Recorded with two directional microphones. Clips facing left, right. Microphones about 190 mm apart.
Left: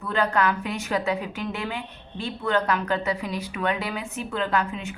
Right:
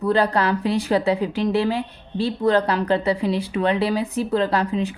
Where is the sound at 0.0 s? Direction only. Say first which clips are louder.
Right 4 dB; 35° right (ahead or behind).